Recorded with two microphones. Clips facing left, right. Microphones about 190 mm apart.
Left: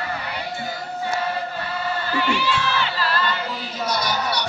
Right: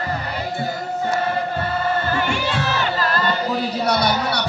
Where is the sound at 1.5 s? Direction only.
50° right (ahead or behind).